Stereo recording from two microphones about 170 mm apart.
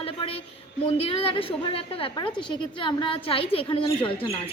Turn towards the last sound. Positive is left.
turn(degrees=30)  # may be behind; listen again after turning